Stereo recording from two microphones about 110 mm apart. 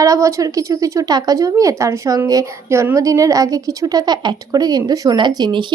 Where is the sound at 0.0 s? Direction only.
30° right (ahead or behind).